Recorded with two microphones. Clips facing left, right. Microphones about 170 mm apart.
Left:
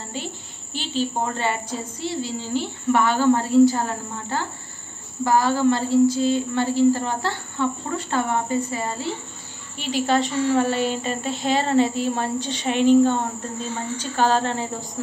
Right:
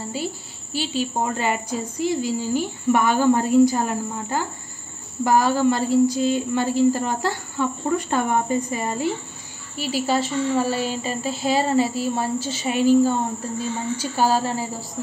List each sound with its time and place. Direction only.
0.2 s a sound: 5° right (ahead or behind)
0.7 s a woman's voice: 10° right (ahead or behind)
9.8 s a woman's voice: 5° right (ahead or behind)